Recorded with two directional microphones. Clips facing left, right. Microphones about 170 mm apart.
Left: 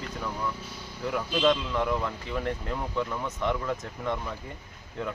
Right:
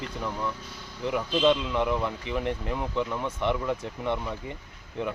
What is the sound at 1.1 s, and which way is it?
Speech, 10° right (ahead or behind).